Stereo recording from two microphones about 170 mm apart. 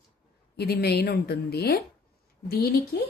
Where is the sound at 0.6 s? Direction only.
70° left (ahead or behind).